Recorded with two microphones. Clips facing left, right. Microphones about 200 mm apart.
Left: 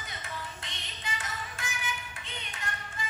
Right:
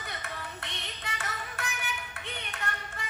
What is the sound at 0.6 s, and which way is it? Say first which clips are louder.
Child singing: right 1 dB; 65° right (ahead or behind).